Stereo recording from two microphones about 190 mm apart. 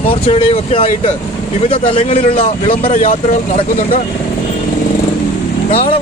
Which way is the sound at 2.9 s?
45° left (ahead or behind).